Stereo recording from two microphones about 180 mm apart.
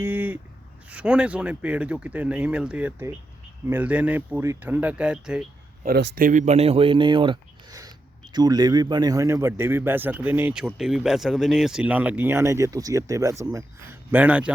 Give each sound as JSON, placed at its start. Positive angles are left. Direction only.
{"t": 0.0, "sound": "a sound", "side_deg": -10}
{"t": 0.9, "sound": "speech", "side_deg": -5}
{"t": 5.8, "sound": "speech", "side_deg": -65}
{"t": 6.2, "sound": "speech", "side_deg": -45}